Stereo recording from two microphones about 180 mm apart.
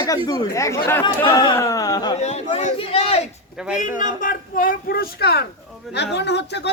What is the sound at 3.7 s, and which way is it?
Speech, 45° left (ahead or behind).